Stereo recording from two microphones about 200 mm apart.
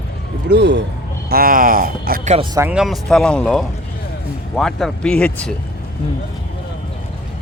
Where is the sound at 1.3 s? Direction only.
45° right (ahead or behind).